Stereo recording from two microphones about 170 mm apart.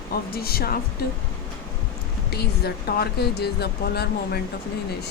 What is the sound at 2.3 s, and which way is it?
Speech, 70° left (ahead or behind).